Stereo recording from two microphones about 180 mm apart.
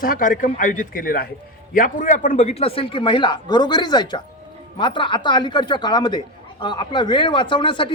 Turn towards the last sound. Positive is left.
turn(degrees=25)  # may be behind; listen again after turning